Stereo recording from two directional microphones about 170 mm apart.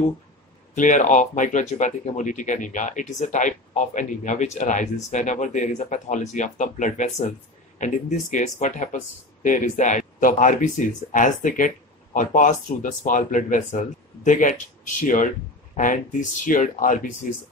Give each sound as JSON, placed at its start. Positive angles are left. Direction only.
{"t": 0.7, "sound": "speech", "side_deg": 50}
{"t": 15.7, "sound": "speech", "side_deg": 50}